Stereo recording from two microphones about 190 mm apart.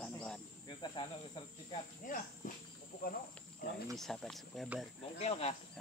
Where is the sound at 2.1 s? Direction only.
45° left (ahead or behind).